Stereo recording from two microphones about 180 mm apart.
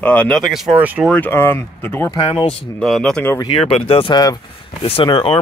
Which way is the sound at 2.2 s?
30° left (ahead or behind).